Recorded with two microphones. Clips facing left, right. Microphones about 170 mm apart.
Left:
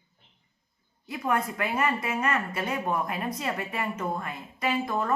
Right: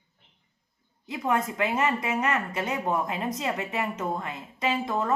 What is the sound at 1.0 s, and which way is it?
Speech, 20° right (ahead or behind).